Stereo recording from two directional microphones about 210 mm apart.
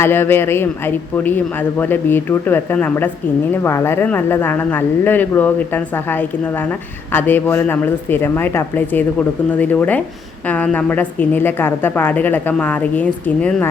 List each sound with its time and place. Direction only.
0.0 s speech: 10° left (ahead or behind)